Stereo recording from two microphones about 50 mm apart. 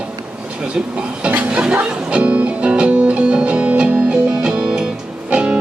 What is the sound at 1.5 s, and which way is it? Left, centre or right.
Music, centre.